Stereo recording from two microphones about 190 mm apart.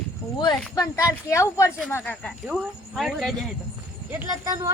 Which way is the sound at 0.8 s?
15° left (ahead or behind).